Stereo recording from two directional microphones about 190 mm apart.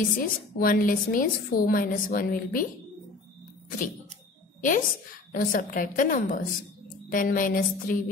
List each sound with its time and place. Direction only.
0.2 s a woman's voice: 50° left (ahead or behind)
4.6 s a woman's voice: 45° left (ahead or behind)